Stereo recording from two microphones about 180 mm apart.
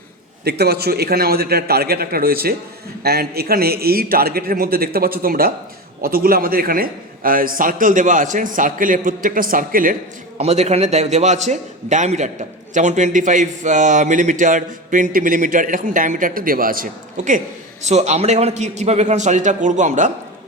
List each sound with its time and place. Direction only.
0.4 s a man's voice: 65° right (ahead or behind)
10.3 s a man's voice: 35° right (ahead or behind)